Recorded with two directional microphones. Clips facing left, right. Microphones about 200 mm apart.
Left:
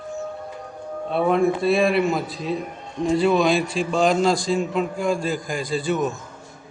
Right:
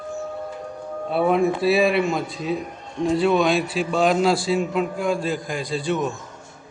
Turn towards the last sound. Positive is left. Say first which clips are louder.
# left 1 dB
turn(degrees=0)  # may be behind; listen again after turning